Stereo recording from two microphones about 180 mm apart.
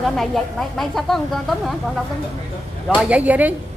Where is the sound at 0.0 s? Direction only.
Centre (ahead or behind).